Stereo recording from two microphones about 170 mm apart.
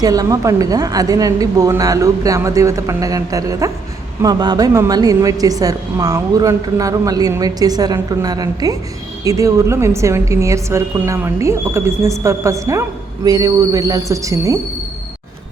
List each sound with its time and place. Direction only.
0.0 s a woman's voice: 20° right (ahead or behind)